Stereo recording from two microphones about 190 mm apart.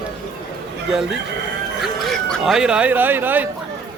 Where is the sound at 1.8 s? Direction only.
Centre (ahead or behind).